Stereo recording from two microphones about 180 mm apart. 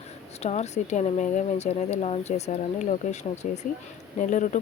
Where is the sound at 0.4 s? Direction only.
40° left (ahead or behind).